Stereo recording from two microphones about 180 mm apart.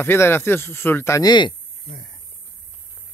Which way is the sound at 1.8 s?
55° left (ahead or behind).